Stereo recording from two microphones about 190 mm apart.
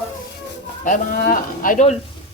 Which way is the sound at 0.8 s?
45° left (ahead or behind).